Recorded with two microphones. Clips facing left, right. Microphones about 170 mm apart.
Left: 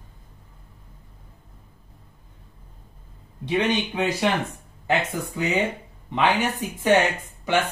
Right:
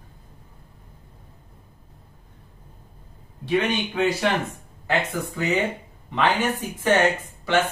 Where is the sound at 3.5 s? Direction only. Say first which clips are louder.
Even; 20° left (ahead or behind).